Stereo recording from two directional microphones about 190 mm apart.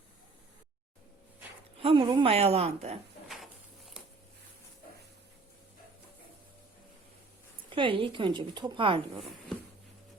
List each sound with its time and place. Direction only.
1.8 s a woman's voice: 25° right (ahead or behind)
7.8 s a woman's voice: 25° right (ahead or behind)